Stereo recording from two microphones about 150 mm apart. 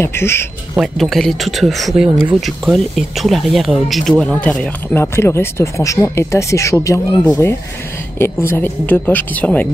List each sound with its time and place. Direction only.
0.0 s a woman's voice: 15° left (ahead or behind)
0.7 s a woman's voice: centre (ahead or behind)